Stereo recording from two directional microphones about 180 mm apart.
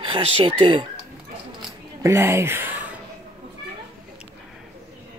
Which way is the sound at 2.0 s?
15° right (ahead or behind).